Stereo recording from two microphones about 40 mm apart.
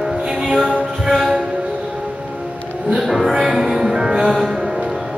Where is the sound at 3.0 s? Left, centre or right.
Centre.